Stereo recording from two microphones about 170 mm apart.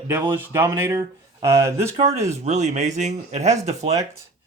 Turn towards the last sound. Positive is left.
turn(degrees=-40)  # may be behind; listen again after turning